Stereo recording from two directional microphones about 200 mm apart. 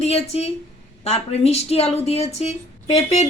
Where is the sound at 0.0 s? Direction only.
30° left (ahead or behind).